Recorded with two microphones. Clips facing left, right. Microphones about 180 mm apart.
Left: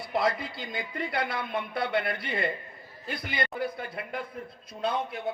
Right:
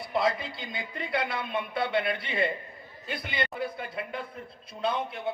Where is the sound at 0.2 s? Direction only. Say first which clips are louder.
Even; 25° right (ahead or behind).